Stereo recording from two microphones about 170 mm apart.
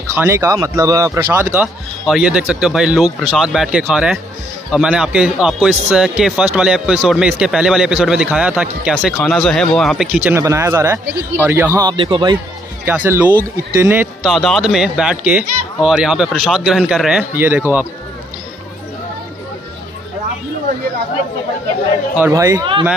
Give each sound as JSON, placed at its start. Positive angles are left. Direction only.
{"t": 0.1, "sound": "a man's voice", "side_deg": -15}
{"t": 10.3, "sound": "a man's voice", "side_deg": -15}
{"t": 12.8, "sound": "a man's voice", "side_deg": -10}
{"t": 14.3, "sound": "a man's voice", "side_deg": 0}
{"t": 22.1, "sound": "speech", "side_deg": -15}